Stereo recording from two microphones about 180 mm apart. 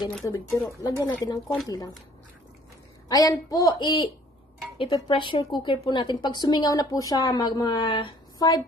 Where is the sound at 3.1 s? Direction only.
20° left (ahead or behind).